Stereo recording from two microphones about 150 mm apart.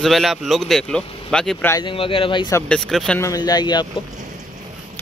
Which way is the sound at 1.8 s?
35° left (ahead or behind).